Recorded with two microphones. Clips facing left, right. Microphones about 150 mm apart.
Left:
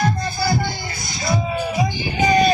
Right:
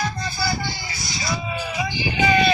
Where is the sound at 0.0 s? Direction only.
50° left (ahead or behind).